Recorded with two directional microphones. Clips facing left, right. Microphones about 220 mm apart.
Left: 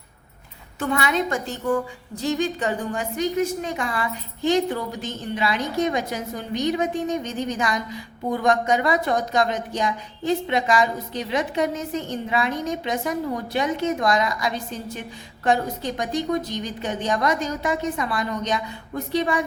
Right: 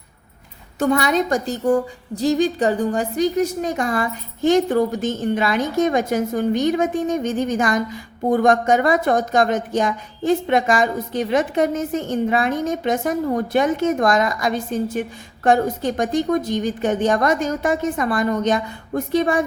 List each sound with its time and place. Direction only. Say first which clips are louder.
0.8 s a woman's voice: right 5 dB; 40° right (ahead or behind)